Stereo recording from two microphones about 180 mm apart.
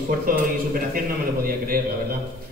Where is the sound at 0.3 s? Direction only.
50° right (ahead or behind).